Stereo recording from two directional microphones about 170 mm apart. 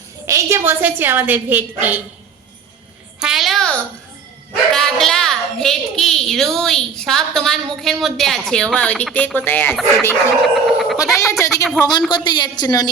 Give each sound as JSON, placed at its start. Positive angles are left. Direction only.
{"t": 0.3, "sound": "a woman's voice", "side_deg": -15}
{"t": 3.2, "sound": "a sound", "side_deg": -5}
{"t": 4.7, "sound": "a woman's voice", "side_deg": 5}
{"t": 10.4, "sound": "a sound", "side_deg": 0}
{"t": 10.9, "sound": "a woman's voice", "side_deg": 20}
{"t": 11.8, "sound": "a woman's voice", "side_deg": 5}
{"t": 12.1, "sound": "a woman's voice", "side_deg": 25}